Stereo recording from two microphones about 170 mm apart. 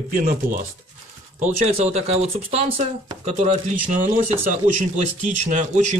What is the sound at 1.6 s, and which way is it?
Speech, 40° right (ahead or behind).